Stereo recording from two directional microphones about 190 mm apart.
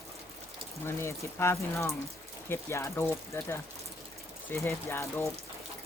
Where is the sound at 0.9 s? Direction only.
15° left (ahead or behind).